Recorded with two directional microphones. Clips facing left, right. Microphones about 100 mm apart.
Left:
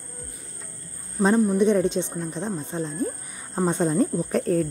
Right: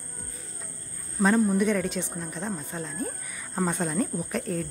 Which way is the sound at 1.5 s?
25° left (ahead or behind).